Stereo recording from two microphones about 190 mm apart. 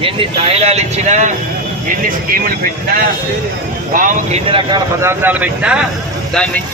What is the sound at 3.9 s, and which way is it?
Speech, 45° right (ahead or behind).